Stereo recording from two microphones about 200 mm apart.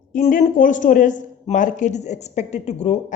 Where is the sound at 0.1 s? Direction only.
40° left (ahead or behind).